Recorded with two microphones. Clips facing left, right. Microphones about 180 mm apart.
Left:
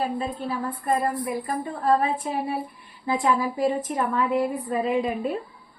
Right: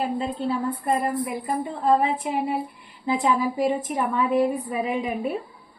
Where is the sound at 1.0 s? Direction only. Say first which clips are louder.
Even; 20° right (ahead or behind).